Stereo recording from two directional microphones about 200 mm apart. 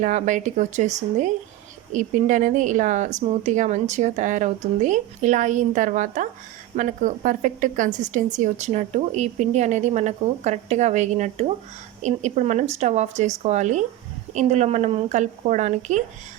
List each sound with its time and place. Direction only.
0.0 s a woman's voice: 40° right (ahead or behind)